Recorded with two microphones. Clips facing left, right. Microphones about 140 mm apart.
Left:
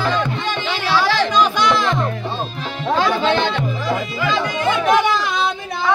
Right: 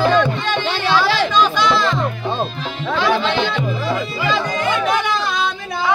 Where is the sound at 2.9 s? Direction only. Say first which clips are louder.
Left 1 dB; 45° left (ahead or behind).